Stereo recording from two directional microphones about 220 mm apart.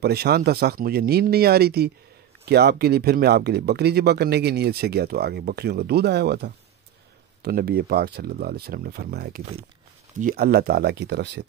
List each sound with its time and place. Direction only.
0.0 s speech: 45° right (ahead or behind)